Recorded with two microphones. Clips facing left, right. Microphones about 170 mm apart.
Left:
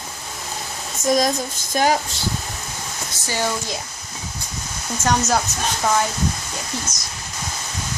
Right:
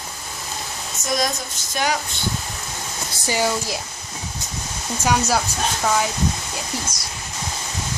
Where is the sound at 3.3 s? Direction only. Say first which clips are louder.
Right 2 dB; 10° right (ahead or behind).